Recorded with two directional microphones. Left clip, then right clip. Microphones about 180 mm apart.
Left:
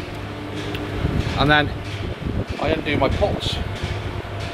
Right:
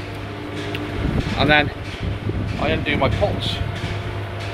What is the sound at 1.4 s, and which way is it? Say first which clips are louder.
Speech: right 1 dB; 20° left (ahead or behind).